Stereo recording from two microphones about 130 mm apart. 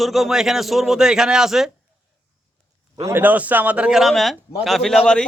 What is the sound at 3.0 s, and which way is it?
A man's voice, 20° right (ahead or behind).